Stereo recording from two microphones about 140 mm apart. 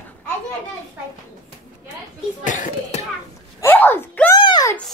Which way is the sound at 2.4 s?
65° left (ahead or behind).